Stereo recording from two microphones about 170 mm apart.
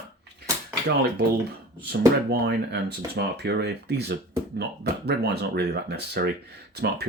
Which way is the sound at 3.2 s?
75° right (ahead or behind).